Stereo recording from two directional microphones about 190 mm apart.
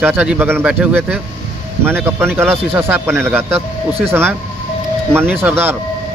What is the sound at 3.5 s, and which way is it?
Speech, 30° right (ahead or behind).